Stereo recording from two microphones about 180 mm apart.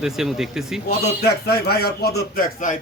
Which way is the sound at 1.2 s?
60° left (ahead or behind).